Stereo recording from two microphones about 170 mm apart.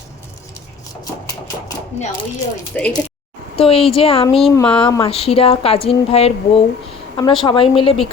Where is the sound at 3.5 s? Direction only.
35° left (ahead or behind).